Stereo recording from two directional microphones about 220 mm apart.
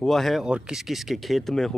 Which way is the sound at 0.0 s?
Centre (ahead or behind).